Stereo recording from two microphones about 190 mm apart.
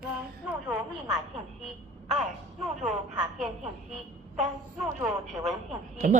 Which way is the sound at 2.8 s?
Centre (ahead or behind).